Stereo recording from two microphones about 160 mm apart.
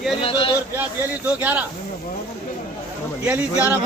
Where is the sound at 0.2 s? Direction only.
35° left (ahead or behind).